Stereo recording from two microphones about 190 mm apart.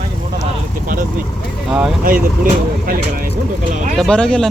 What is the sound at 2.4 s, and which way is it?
Speech, 50° right (ahead or behind).